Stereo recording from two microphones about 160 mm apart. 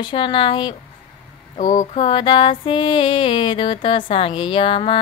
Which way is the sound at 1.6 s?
50° left (ahead or behind).